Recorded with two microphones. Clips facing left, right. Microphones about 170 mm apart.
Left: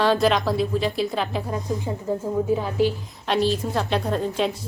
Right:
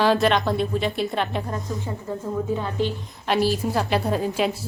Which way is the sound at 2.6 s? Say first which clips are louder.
Left 3 dB; 5° left (ahead or behind).